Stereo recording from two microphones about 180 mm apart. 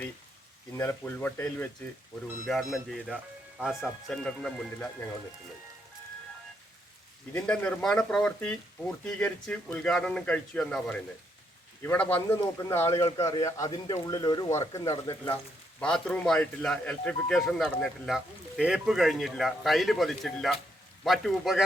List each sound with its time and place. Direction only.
0.8 s speech: 15° left (ahead or behind)
2.5 s speech: centre (ahead or behind)
7.3 s a man's voice: 5° left (ahead or behind); by 15.2 s 25° left (ahead or behind)
15.8 s speech: 5° left (ahead or behind)